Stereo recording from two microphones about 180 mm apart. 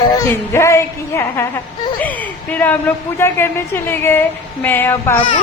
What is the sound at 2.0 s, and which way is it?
A woman's voice, 10° left (ahead or behind).